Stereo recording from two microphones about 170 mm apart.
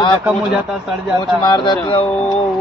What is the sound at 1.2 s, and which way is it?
Speech, 25° left (ahead or behind).